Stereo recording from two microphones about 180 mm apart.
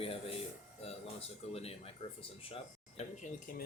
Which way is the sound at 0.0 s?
30° left (ahead or behind).